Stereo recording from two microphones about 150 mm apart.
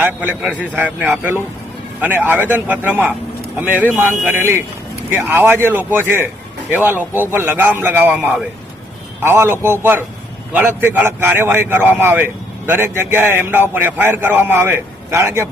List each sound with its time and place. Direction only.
0.0 s a man's voice: 10° right (ahead or behind)